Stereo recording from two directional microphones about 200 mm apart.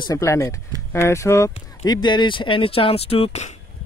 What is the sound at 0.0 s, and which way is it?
Speech, 15° left (ahead or behind).